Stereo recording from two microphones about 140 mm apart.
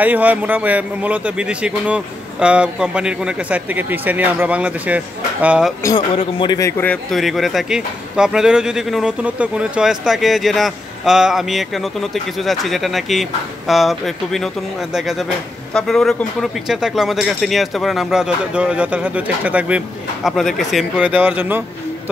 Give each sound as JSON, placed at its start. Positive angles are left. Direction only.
{"t": 0.0, "sound": "a man's voice", "side_deg": -10}
{"t": 5.9, "sound": "a man's voice", "side_deg": 35}
{"t": 6.6, "sound": "a man's voice", "side_deg": 15}
{"t": 7.1, "sound": "a man's voice", "side_deg": 0}